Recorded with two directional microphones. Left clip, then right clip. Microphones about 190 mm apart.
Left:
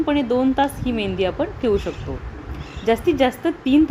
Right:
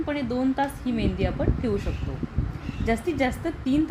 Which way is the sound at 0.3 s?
20° left (ahead or behind).